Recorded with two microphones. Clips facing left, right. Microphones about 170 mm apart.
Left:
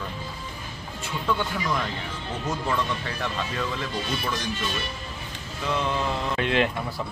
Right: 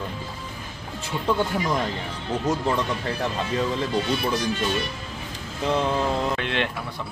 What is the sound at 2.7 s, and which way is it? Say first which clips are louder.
Speech: right 3 dB; 30° right (ahead or behind).